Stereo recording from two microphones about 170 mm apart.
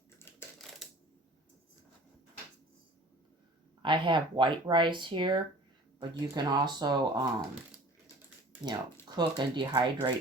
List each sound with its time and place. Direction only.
0.3 s crushing: 15° left (ahead or behind)
0.6 s coin: 5° left (ahead or behind)
3.8 s speech: 30° right (ahead or behind)
8.6 s speech: 25° right (ahead or behind)